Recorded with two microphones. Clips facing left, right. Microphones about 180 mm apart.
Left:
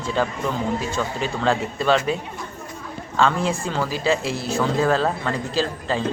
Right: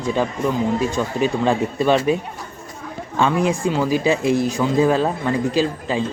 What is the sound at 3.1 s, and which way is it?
Speech, 15° right (ahead or behind).